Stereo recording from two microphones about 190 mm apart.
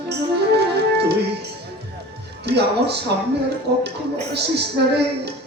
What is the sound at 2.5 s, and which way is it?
Speech, 60° right (ahead or behind).